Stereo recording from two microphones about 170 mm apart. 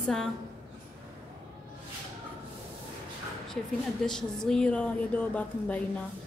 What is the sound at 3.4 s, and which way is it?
A woman's voice, 5° left (ahead or behind).